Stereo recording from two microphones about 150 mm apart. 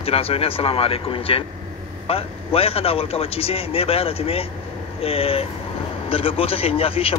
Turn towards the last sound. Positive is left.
turn(degrees=40)  # may be behind; listen again after turning